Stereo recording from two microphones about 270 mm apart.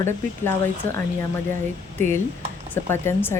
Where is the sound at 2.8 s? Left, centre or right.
Centre.